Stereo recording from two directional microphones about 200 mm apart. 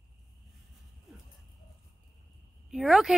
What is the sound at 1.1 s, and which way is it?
Horse, centre (ahead or behind).